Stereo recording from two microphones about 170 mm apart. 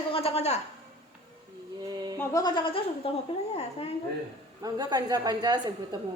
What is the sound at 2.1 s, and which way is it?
Speech, 20° left (ahead or behind).